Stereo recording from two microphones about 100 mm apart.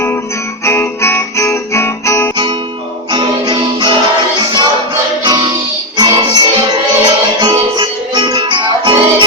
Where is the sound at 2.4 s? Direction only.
50° right (ahead or behind).